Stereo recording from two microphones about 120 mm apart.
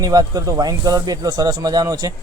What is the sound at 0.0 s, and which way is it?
Speech, 30° right (ahead or behind).